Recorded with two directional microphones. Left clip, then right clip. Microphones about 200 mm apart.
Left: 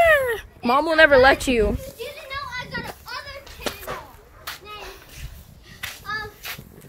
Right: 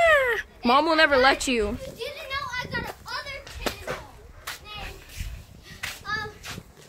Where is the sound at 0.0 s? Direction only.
20° left (ahead or behind).